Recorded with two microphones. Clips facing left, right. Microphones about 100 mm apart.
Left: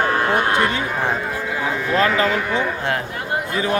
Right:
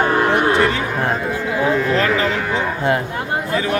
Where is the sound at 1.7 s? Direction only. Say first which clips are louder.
Right 4 dB; 5° left (ahead or behind).